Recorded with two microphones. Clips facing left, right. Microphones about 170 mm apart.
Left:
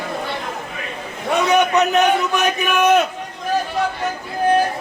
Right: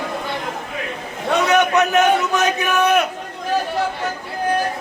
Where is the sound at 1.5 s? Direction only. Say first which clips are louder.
Left 1 dB; 15° left (ahead or behind).